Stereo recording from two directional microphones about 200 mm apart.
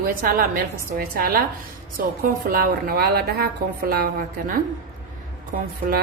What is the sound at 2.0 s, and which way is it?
A woman's voice, 45° right (ahead or behind).